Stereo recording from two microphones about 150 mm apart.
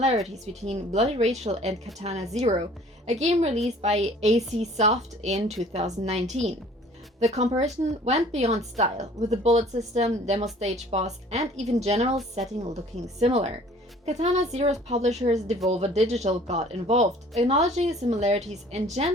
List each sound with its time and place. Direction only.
0.6 s speech: 45° right (ahead or behind)